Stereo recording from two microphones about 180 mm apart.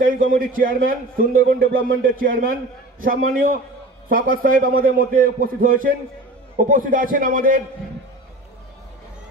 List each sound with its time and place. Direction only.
0.6 s a man's voice: 50° right (ahead or behind)